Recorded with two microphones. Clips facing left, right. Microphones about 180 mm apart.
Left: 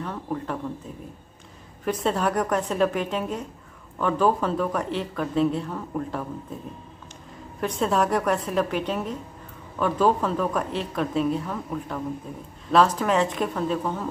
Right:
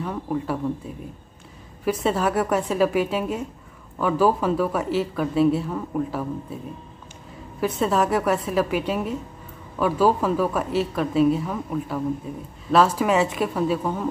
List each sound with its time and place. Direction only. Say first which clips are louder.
0.0 s a woman's voice: right 3 dB; 5° right (ahead or behind)
2.0 s a woman's voice: right 2 dB; 5° right (ahead or behind)
7.6 s a woman's voice: right 2 dB; centre (ahead or behind)